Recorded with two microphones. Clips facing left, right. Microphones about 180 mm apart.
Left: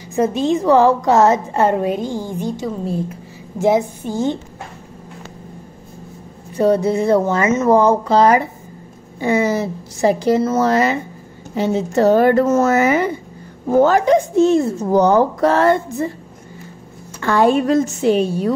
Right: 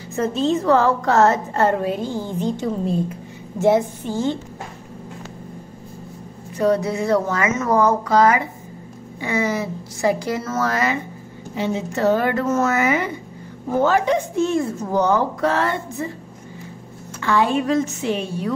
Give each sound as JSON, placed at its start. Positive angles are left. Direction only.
{"t": 0.1, "sound": "a woman's voice", "side_deg": 15}
{"t": 6.5, "sound": "speech", "side_deg": 30}
{"t": 11.5, "sound": "a woman's voice", "side_deg": 40}
{"t": 14.3, "sound": "speech", "side_deg": 30}
{"t": 14.9, "sound": "a woman's voice", "side_deg": 40}
{"t": 17.2, "sound": "a woman's voice", "side_deg": 45}